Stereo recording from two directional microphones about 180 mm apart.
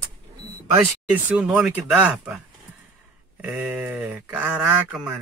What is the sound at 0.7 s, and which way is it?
Speech, 10° right (ahead or behind).